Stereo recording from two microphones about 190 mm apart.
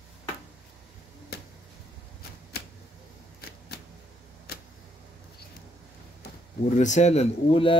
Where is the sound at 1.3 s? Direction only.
60° left (ahead or behind).